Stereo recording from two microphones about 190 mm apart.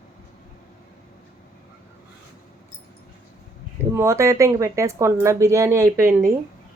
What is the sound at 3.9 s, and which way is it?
Speech, 15° right (ahead or behind).